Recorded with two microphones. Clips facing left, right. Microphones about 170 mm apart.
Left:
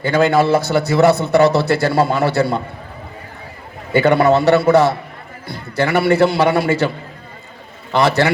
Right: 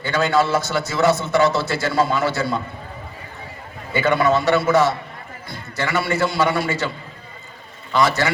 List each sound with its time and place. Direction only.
0.0 s a man's voice: 55° left (ahead or behind)
3.9 s a man's voice: 65° left (ahead or behind)
7.9 s a man's voice: 60° left (ahead or behind)